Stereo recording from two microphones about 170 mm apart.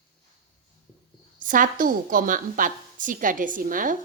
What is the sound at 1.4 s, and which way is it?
A woman's voice, 50° right (ahead or behind).